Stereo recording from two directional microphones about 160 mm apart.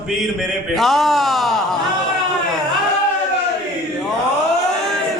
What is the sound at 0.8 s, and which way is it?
Speech, centre (ahead or behind).